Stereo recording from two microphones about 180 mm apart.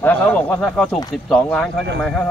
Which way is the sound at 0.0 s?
10° left (ahead or behind).